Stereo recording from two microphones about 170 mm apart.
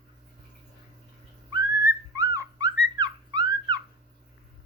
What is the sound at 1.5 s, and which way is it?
Music, 20° right (ahead or behind).